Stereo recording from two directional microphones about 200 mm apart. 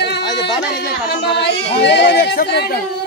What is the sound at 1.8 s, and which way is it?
Speech, 60° left (ahead or behind).